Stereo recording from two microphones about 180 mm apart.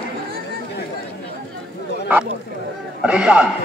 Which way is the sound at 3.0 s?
5° right (ahead or behind).